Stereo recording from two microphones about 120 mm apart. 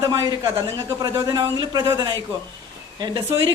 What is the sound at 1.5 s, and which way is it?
A man's voice, 35° right (ahead or behind).